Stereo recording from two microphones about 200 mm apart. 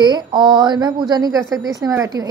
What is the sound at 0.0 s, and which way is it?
A woman's voice, 20° right (ahead or behind).